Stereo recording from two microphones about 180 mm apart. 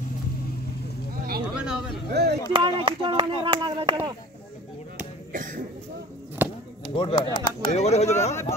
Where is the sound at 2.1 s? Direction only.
65° right (ahead or behind).